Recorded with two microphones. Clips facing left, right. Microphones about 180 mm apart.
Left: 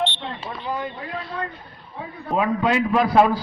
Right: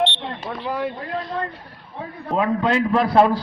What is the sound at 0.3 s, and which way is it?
Smoke detector, 45° right (ahead or behind).